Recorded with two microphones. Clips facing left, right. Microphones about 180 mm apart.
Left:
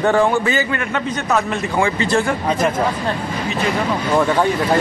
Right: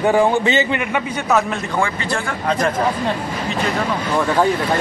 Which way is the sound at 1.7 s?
15° left (ahead or behind).